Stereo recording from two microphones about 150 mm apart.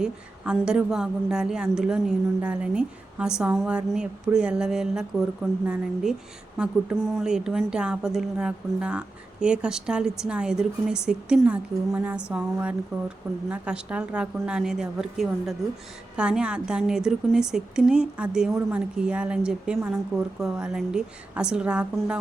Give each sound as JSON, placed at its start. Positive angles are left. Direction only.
{"t": 0.0, "sound": "a woman's voice", "side_deg": -5}